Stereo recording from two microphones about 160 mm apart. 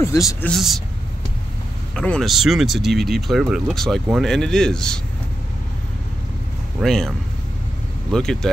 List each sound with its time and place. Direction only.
0.0 s speech: 20° left (ahead or behind)
0.5 s speech: centre (ahead or behind)
2.0 s speech: 5° left (ahead or behind)
6.8 s speech: centre (ahead or behind)